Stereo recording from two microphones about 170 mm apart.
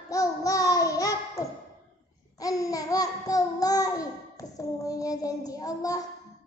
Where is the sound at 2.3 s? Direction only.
20° left (ahead or behind).